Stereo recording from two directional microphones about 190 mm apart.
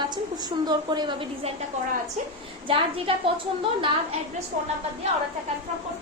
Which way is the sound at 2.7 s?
30° right (ahead or behind).